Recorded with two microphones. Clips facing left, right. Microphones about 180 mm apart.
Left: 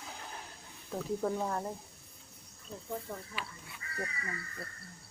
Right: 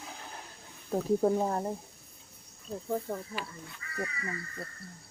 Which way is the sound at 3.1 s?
40° right (ahead or behind).